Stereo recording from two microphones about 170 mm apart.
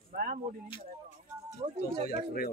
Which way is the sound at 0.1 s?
55° right (ahead or behind).